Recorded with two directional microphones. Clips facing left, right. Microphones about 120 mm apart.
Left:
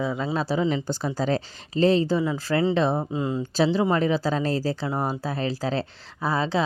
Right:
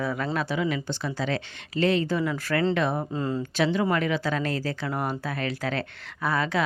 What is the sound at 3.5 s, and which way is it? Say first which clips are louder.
Speech: left 3 dB; 30° left (ahead or behind).